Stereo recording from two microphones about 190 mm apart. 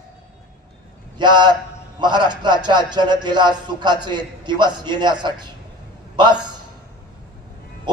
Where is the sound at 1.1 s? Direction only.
25° right (ahead or behind).